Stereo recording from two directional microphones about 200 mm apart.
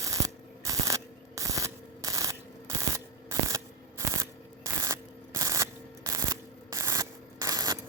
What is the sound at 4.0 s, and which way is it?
Scissors, 15° right (ahead or behind).